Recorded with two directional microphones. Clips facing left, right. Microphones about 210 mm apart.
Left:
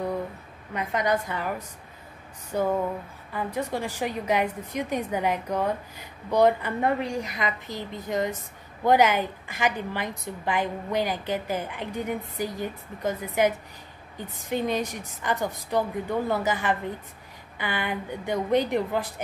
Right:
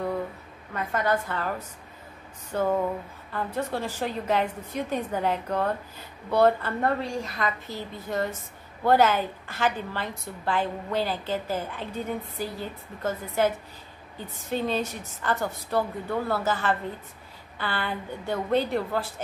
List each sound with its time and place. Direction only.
0.7 s a woman's voice: 15° left (ahead or behind)